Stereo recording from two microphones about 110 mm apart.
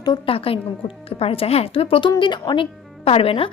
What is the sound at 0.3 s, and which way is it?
Speech, 60° left (ahead or behind).